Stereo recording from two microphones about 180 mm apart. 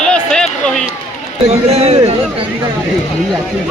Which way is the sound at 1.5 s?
35° right (ahead or behind).